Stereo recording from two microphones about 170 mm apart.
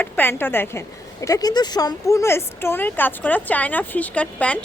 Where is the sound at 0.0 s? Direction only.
10° left (ahead or behind).